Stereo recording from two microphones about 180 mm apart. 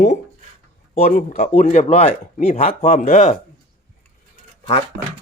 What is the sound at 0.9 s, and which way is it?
Speech, 35° left (ahead or behind).